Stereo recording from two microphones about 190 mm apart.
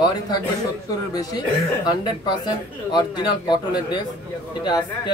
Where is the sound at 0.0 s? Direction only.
20° left (ahead or behind).